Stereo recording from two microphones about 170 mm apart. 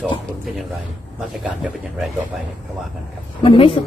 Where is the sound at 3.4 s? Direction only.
30° left (ahead or behind).